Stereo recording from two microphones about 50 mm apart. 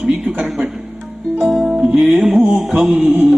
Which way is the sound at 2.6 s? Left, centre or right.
Centre.